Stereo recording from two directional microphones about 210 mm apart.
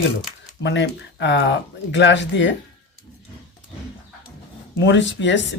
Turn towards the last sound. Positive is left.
turn(degrees=60)  # may be behind; listen again after turning